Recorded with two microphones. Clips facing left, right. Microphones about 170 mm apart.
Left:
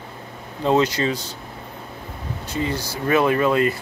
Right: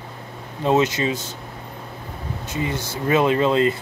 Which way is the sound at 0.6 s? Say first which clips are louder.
Even; 20° right (ahead or behind).